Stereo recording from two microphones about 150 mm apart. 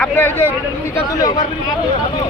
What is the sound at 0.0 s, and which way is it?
Speech, 10° left (ahead or behind).